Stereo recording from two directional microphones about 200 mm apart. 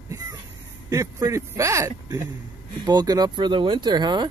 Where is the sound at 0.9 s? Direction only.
15° right (ahead or behind).